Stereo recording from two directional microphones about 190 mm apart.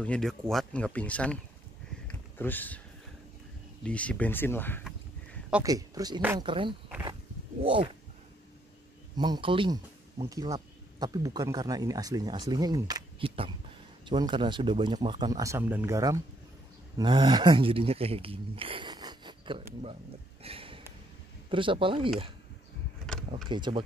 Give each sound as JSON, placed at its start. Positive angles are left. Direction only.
{"t": 0.0, "sound": "speech", "side_deg": 5}
{"t": 2.0, "sound": "a sound", "side_deg": 10}
{"t": 3.8, "sound": "speech", "side_deg": 5}
{"t": 5.6, "sound": "speech", "side_deg": -20}
{"t": 9.1, "sound": "speech", "side_deg": -20}
{"t": 20.4, "sound": "a sound", "side_deg": -30}
{"t": 21.5, "sound": "speech", "side_deg": -25}
{"t": 23.5, "sound": "speech", "side_deg": -25}